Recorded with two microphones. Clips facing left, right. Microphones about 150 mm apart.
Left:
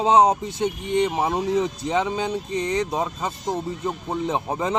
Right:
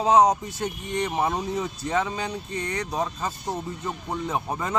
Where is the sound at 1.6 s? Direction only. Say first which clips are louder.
Left 3 dB; 25° left (ahead or behind).